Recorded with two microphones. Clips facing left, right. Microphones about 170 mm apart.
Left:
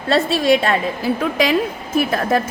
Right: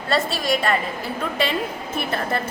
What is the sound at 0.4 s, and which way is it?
A woman's voice, 60° left (ahead or behind).